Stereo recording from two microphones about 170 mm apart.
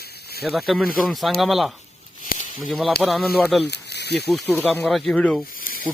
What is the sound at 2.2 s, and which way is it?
Snake, 50° left (ahead or behind).